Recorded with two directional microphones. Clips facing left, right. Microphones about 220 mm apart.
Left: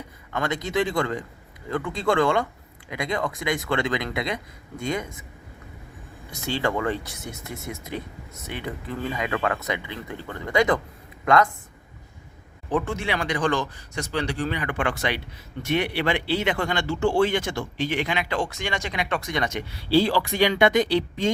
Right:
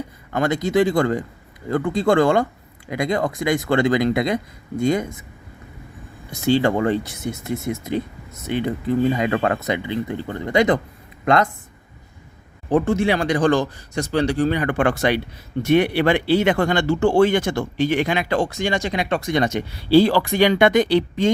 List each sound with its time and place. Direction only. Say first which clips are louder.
0.3 s a man's voice: right 7 dB; 35° right (ahead or behind)
6.4 s speech: right 8 dB; 30° right (ahead or behind)
12.6 s a man's voice: right 8 dB; 35° right (ahead or behind)
19.9 s speech: right 6 dB; 55° right (ahead or behind)